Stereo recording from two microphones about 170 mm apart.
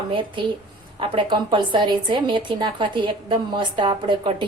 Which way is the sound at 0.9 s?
30° right (ahead or behind).